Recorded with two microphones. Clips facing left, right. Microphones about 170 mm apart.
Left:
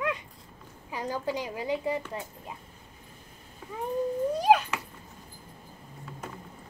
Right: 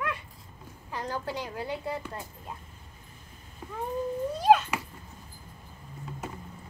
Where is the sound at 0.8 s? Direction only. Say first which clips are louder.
Left 2 dB; 10° left (ahead or behind).